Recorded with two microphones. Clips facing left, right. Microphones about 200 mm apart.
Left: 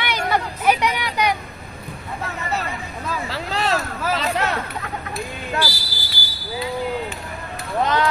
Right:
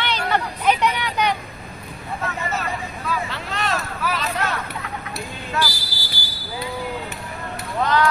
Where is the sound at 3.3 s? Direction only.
30° left (ahead or behind).